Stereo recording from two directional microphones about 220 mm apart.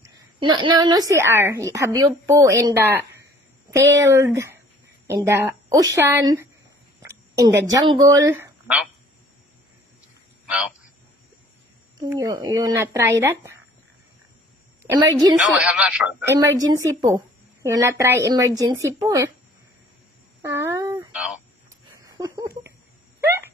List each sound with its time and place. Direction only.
0.0 s a woman's voice: 20° right (ahead or behind)
7.1 s a sound: 15° right (ahead or behind)
8.0 s speech: 15° right (ahead or behind)
12.0 s a woman's voice: 15° right (ahead or behind)
15.0 s a woman's voice: 15° right (ahead or behind)
15.4 s speech: 5° right (ahead or behind)
16.3 s a woman's voice: 15° right (ahead or behind)
20.4 s a sound: 10° right (ahead or behind)
22.0 s a sound: 20° right (ahead or behind)